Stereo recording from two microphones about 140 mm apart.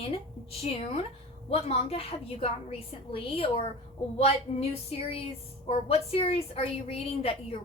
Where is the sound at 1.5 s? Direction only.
45° left (ahead or behind).